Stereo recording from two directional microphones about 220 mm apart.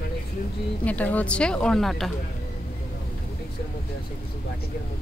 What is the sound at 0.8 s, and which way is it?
A woman's voice, 5° left (ahead or behind).